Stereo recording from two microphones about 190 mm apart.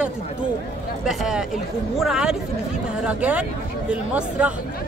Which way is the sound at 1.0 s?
5° right (ahead or behind).